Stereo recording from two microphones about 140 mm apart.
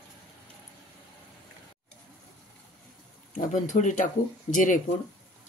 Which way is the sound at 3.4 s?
65° left (ahead or behind).